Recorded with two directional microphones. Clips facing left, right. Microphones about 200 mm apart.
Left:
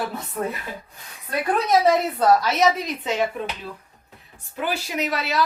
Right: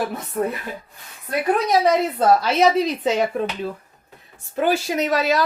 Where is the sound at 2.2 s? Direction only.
25° right (ahead or behind).